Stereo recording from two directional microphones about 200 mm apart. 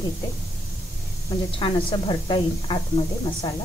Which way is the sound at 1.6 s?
25° left (ahead or behind).